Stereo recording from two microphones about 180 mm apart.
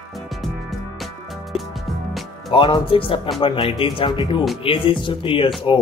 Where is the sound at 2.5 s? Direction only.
30° left (ahead or behind).